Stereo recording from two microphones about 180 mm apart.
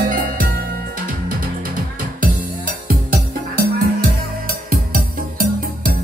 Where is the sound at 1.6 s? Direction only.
50° right (ahead or behind).